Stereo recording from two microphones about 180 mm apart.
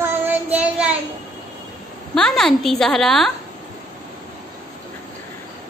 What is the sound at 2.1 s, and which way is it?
A woman's voice, 5° left (ahead or behind).